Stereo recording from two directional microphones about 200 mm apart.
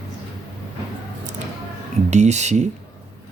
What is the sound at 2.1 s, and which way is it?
Speech, 35° right (ahead or behind).